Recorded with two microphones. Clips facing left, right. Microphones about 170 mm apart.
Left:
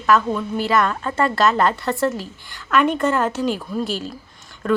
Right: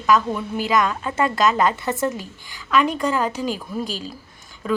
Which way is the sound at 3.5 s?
40° right (ahead or behind).